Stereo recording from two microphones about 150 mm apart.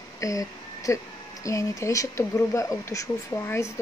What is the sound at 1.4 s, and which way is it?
Speech, 20° left (ahead or behind).